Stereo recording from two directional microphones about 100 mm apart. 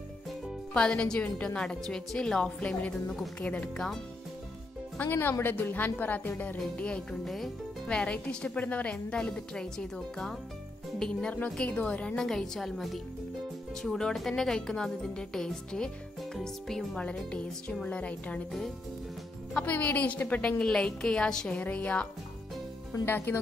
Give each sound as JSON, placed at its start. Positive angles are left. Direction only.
{"t": 0.7, "sound": "a woman's voice", "side_deg": 10}
{"t": 4.9, "sound": "a woman's voice", "side_deg": 20}
{"t": 23.0, "sound": "a woman's voice", "side_deg": 20}